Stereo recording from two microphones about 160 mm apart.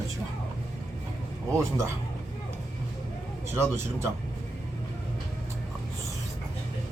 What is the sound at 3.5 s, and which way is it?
Speech, 15° right (ahead or behind).